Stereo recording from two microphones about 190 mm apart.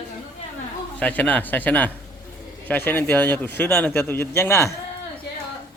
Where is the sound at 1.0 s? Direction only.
10° left (ahead or behind).